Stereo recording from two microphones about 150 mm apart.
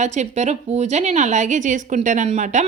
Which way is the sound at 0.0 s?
50° right (ahead or behind).